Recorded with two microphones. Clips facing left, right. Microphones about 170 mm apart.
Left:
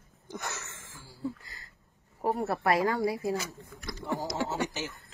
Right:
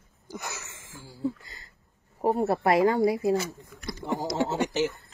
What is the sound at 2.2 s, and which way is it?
Speech, 25° right (ahead or behind).